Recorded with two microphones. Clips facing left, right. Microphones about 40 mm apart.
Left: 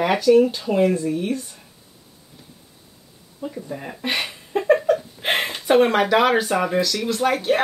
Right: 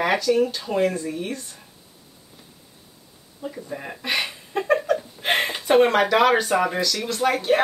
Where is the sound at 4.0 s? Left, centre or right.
Left.